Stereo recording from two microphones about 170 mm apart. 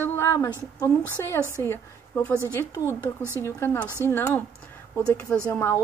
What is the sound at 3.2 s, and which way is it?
Speech, 15° right (ahead or behind).